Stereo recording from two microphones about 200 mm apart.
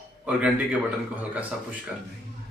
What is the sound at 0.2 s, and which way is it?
Speech, 5° right (ahead or behind).